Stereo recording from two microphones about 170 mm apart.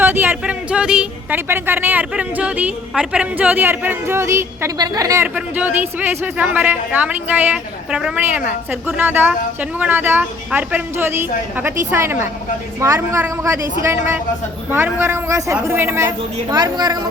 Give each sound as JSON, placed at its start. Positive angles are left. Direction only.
{"t": 0.0, "sound": "a woman's voice", "side_deg": -10}